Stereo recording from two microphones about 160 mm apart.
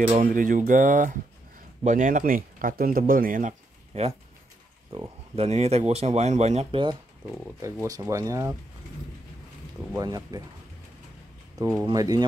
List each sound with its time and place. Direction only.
0.0 s speech: 55° right (ahead or behind)
4.9 s speech: 35° right (ahead or behind)
7.6 s speech: 20° right (ahead or behind)
9.9 s speech: 25° right (ahead or behind)
11.7 s speech: 20° right (ahead or behind)